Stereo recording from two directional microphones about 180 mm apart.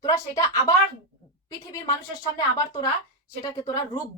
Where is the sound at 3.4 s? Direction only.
20° left (ahead or behind).